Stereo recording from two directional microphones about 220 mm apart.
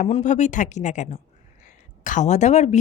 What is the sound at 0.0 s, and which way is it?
A woman's voice, 30° left (ahead or behind).